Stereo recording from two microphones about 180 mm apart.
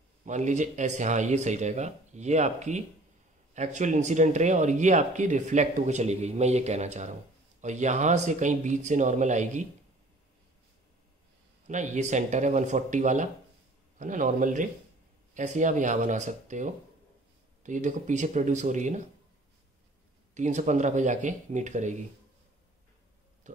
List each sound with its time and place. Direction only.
0.2 s speech: 45° right (ahead or behind)
11.6 s speech: 40° right (ahead or behind)
20.3 s speech: 40° right (ahead or behind)
23.5 s a sound: 40° right (ahead or behind)